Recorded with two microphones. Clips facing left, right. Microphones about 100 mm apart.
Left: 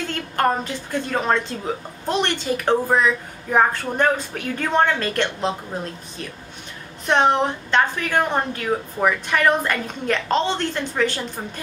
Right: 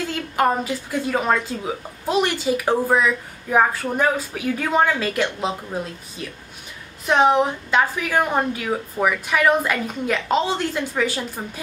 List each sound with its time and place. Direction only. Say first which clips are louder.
0.1 s a woman's voice: even; 5° right (ahead or behind)
7.1 s a woman's voice: right 1 dB; 5° right (ahead or behind)